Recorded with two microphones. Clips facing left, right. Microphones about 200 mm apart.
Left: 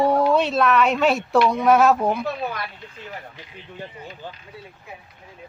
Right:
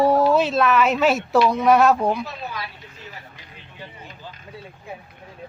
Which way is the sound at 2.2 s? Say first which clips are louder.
Left 5 dB; 55° left (ahead or behind).